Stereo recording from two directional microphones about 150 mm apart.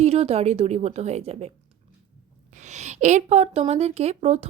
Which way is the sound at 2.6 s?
50° right (ahead or behind).